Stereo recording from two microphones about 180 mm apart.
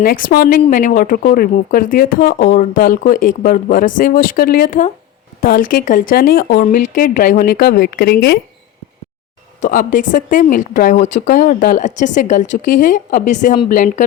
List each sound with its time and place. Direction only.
0.0 s speech: 55° left (ahead or behind)
9.6 s speech: 50° left (ahead or behind)